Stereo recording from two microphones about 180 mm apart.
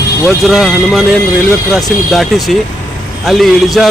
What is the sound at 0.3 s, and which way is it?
Speech, centre (ahead or behind).